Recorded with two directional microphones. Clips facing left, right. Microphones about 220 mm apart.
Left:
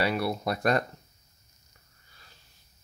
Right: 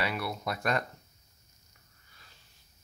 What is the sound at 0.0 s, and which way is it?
Speech, 35° left (ahead or behind).